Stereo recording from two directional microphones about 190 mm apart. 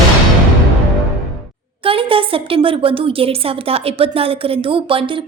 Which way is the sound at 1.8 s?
30° right (ahead or behind).